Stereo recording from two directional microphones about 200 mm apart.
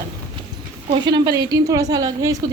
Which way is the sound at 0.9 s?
20° right (ahead or behind).